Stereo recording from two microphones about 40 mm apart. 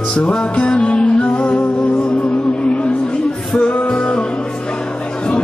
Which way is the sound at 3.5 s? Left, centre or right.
Left.